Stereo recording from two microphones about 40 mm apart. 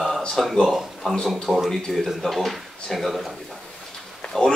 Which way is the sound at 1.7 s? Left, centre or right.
Centre.